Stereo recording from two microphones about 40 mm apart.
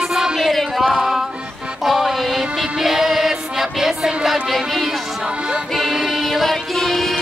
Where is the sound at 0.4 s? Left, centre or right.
Centre.